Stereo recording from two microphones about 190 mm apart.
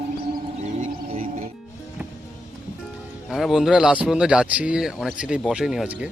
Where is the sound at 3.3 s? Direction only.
Centre (ahead or behind).